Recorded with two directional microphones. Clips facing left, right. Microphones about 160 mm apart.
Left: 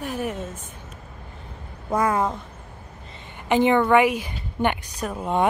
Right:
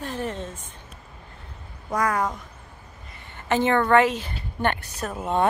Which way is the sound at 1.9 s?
25° left (ahead or behind).